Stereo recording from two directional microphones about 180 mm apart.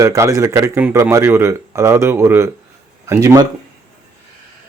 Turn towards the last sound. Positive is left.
turn(degrees=-15)  # may be behind; listen again after turning